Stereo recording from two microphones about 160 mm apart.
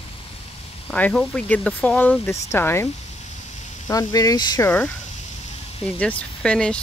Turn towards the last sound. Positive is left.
turn(degrees=5)  # may be behind; listen again after turning